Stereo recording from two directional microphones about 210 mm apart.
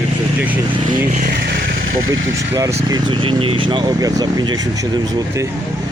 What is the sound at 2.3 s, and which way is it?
Speech, 15° right (ahead or behind).